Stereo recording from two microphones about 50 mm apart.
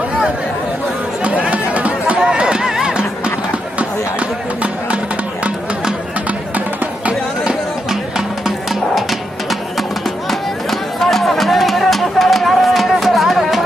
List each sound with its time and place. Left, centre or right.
1.2 s music: right
10.7 s music: centre